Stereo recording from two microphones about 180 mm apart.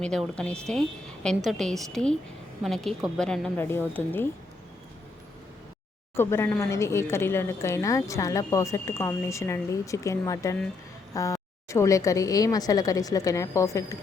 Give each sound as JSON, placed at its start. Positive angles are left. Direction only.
{"t": 0.0, "sound": "a woman's voice", "side_deg": 5}
{"t": 6.1, "sound": "a woman's voice", "side_deg": 15}